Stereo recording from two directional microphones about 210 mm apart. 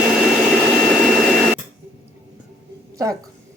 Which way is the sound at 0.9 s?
5° right (ahead or behind).